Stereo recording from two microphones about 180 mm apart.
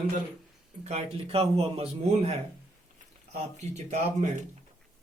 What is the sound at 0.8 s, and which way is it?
Speech, 35° right (ahead or behind).